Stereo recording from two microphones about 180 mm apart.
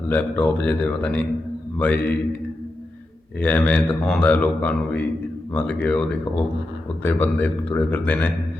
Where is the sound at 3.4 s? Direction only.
10° left (ahead or behind).